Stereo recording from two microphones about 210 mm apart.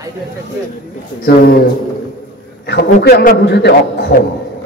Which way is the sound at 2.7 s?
50° left (ahead or behind).